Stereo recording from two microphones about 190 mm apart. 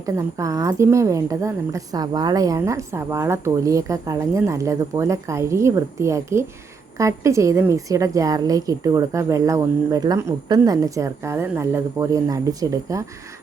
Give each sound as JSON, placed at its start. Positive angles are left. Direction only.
{"t": 0.2, "sound": "a woman's voice", "side_deg": -15}